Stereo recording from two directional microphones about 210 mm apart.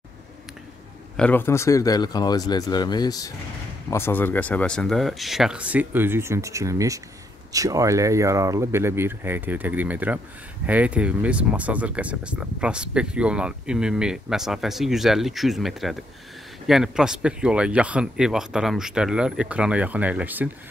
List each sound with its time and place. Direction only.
1.1 s speech: 5° left (ahead or behind)